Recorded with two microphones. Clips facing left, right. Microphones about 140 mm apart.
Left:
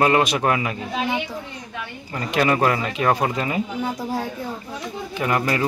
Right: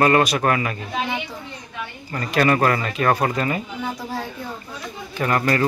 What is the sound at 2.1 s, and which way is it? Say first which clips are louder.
Speech: right 1 dB; 15° left (ahead or behind).